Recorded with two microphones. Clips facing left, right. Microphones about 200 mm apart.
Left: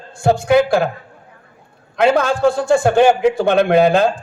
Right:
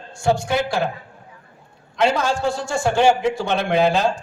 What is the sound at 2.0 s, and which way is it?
A man's voice, 55° left (ahead or behind).